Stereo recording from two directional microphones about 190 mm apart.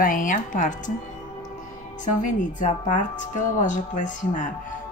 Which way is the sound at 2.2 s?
40° left (ahead or behind).